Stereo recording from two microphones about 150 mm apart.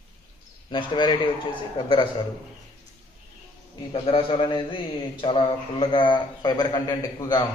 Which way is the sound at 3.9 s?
35° left (ahead or behind).